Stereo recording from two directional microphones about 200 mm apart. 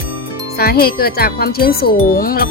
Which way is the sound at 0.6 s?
50° left (ahead or behind).